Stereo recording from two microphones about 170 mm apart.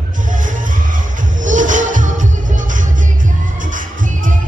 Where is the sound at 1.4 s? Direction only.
50° right (ahead or behind).